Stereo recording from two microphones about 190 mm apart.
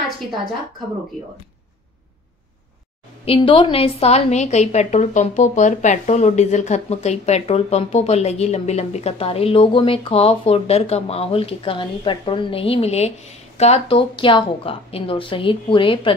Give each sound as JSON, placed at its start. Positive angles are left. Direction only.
{"t": 3.3, "sound": "a woman's voice", "side_deg": 25}